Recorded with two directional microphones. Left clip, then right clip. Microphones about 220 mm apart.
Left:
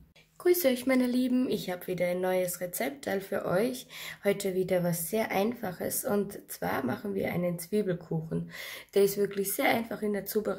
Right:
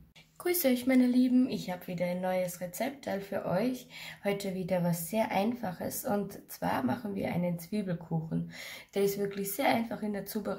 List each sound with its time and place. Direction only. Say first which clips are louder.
0.4 s speech: left 4 dB; 5° left (ahead or behind)